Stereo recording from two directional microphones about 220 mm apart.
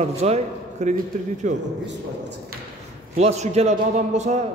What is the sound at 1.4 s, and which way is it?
Speech, 35° right (ahead or behind).